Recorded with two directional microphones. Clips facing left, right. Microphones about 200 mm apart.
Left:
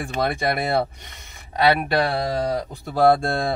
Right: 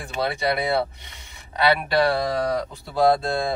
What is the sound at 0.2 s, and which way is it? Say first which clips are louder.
Speech: even; 50° left (ahead or behind).